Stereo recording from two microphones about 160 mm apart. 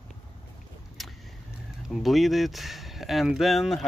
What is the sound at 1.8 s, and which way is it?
Speech, centre (ahead or behind).